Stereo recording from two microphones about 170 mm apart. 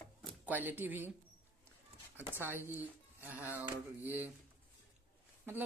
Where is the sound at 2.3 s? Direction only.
10° right (ahead or behind).